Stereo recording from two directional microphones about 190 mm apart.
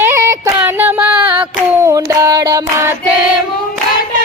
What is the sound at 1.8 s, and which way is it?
Music, 15° right (ahead or behind).